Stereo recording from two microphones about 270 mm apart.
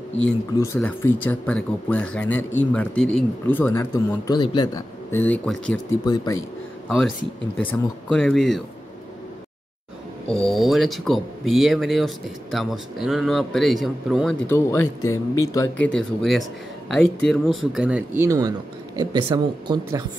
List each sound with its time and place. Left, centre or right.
0.2 s speech: centre
6.9 s speech: centre
10.2 s speech: centre
15.9 s speech: centre